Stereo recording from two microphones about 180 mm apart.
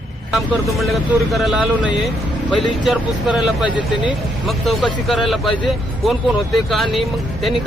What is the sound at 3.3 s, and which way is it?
Speech, 5° right (ahead or behind).